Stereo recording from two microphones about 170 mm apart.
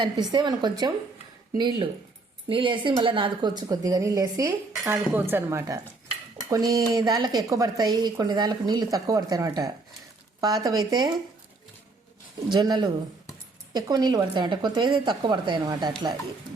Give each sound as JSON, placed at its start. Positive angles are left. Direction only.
{"t": 0.0, "sound": "a woman's voice", "side_deg": -25}
{"t": 6.3, "sound": "cutlery", "side_deg": -20}
{"t": 6.9, "sound": "a woman's voice", "side_deg": -20}
{"t": 12.5, "sound": "a woman's voice", "side_deg": -25}